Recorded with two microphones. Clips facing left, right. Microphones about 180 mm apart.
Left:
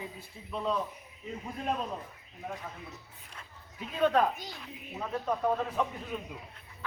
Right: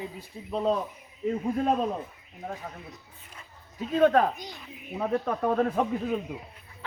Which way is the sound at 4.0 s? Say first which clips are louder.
Right 5 dB; 50° right (ahead or behind).